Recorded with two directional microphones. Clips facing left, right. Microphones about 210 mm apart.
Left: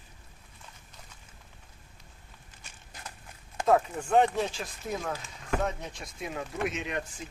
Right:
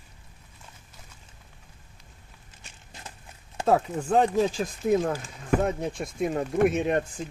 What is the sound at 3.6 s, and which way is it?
Speech, 35° right (ahead or behind).